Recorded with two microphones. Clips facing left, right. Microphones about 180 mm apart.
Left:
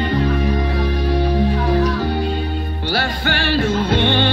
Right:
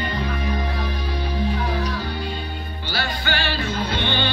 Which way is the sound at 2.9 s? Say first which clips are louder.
Left 4 dB; 65° left (ahead or behind).